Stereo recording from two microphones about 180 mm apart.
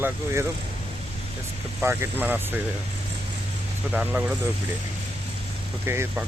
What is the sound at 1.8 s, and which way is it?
Speech, 10° right (ahead or behind).